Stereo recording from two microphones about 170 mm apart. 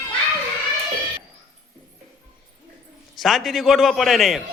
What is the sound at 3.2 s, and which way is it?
A man's voice, centre (ahead or behind).